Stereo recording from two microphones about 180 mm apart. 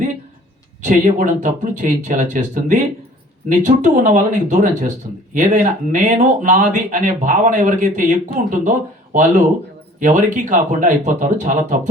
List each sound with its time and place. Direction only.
0.9 s speech: 45° right (ahead or behind)
10.0 s speech: 45° right (ahead or behind)